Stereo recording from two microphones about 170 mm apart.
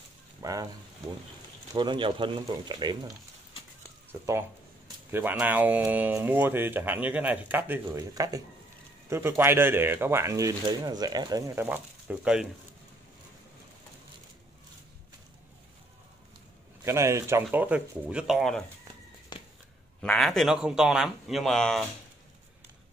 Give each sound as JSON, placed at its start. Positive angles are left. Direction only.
{"t": 0.4, "sound": "sizzle", "side_deg": -20}
{"t": 1.7, "sound": "speech", "side_deg": -25}
{"t": 4.1, "sound": "speech", "side_deg": -15}
{"t": 16.8, "sound": "speech", "side_deg": -15}
{"t": 19.3, "sound": "a sound", "side_deg": 25}
{"t": 20.0, "sound": "speech", "side_deg": 5}